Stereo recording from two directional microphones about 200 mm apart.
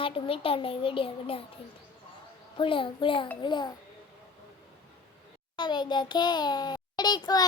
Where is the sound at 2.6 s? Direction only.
25° left (ahead or behind).